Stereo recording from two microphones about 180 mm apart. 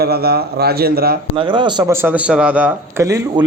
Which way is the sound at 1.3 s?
25° right (ahead or behind).